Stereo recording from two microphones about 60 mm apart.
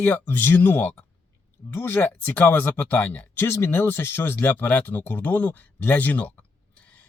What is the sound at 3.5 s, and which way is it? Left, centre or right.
Speech, left.